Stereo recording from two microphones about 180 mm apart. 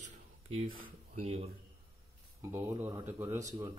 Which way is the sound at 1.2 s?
35° right (ahead or behind).